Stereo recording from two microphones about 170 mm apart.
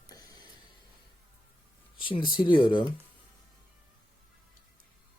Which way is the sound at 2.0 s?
30° left (ahead or behind).